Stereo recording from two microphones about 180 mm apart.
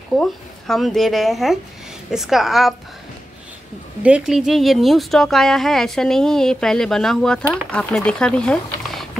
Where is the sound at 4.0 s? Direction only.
5° right (ahead or behind).